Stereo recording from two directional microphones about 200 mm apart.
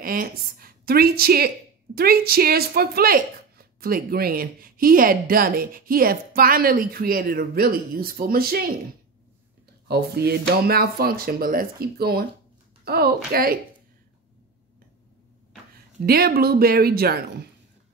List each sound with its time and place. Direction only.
0.0 s a woman's voice: 45° right (ahead or behind)
9.8 s a woman's voice: 55° right (ahead or behind)
16.1 s a woman's voice: 50° right (ahead or behind)